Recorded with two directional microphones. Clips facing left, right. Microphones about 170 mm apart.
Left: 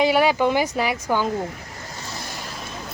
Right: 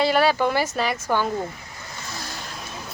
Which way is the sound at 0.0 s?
15° left (ahead or behind).